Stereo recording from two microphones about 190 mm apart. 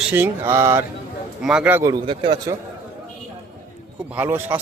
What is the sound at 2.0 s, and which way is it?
Speech, 30° right (ahead or behind).